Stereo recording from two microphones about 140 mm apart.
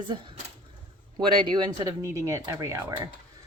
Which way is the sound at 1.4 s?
30° right (ahead or behind).